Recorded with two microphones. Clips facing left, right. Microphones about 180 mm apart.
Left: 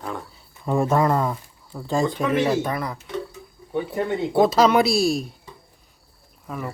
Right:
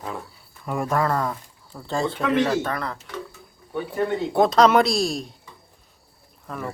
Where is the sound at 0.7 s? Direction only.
25° left (ahead or behind).